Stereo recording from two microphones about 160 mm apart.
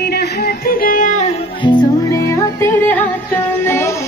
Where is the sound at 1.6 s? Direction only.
30° left (ahead or behind).